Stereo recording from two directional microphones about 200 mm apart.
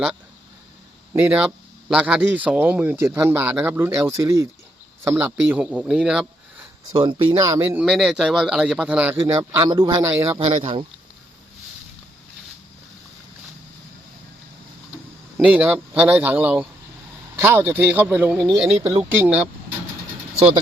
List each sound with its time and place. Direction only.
1.1 s speech: 10° right (ahead or behind)
6.9 s speech: 20° right (ahead or behind)
10.4 s speech: 25° right (ahead or behind)
15.4 s speech: 5° right (ahead or behind)